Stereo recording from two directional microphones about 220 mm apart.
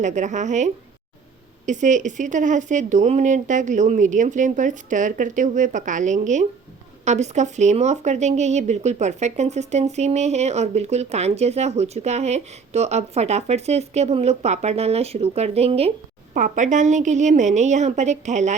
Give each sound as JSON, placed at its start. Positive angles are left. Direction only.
{"t": 0.0, "sound": "speech", "side_deg": -35}